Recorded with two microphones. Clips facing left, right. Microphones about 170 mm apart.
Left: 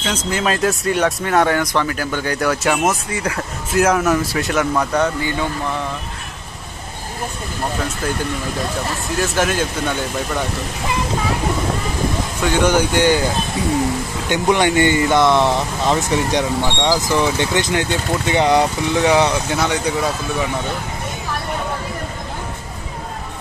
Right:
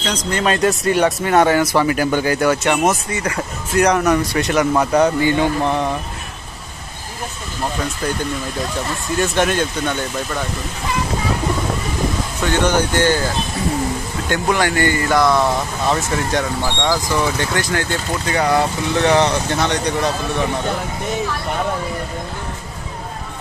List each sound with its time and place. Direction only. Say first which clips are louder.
0.0 s speech: right 1 dB; 5° left (ahead or behind); by 2.2 s 15° right (ahead or behind)
2.2 s speech: right 2 dB; centre (ahead or behind)
4.7 s speech: right 5 dB; 10° right (ahead or behind)
9.2 s speech: right 1 dB; 5° left (ahead or behind)
12.4 s speech: left 1 dB; 10° left (ahead or behind)
14.3 s speech: left 2 dB; 20° left (ahead or behind)